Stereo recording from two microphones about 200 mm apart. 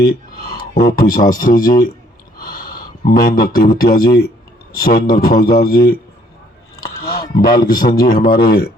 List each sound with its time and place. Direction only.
0.0 s speech: 50° left (ahead or behind)
6.7 s a sound: 50° left (ahead or behind)
7.7 s speech: 45° left (ahead or behind)